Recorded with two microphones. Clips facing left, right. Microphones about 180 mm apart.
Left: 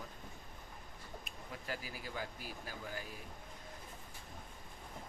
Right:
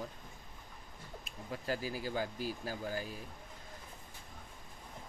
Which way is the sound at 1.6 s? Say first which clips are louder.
Right 8 dB; 35° right (ahead or behind).